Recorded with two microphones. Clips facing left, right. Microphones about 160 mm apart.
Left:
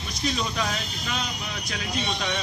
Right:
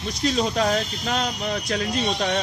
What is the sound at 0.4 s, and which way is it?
Speech, 45° right (ahead or behind).